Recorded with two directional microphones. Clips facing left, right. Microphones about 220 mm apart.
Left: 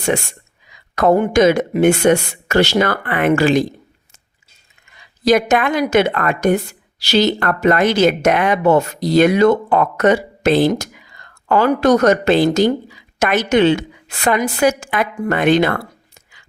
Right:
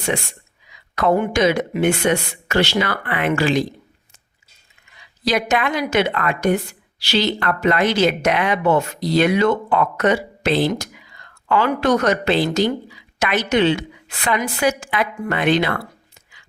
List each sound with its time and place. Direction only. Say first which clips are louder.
0.9 s a woman's voice: left 5 dB; 45° left (ahead or behind)
5.2 s a woman's voice: left 6 dB; 45° left (ahead or behind)